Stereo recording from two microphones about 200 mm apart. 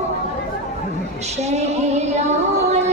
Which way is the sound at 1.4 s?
35° right (ahead or behind).